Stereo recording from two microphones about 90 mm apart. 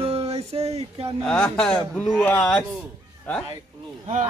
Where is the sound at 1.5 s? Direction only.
10° left (ahead or behind).